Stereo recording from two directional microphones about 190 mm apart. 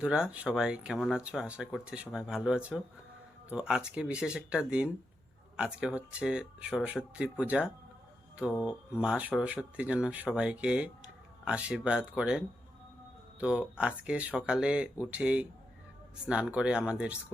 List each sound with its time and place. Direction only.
0.0 s speech: 5° right (ahead or behind)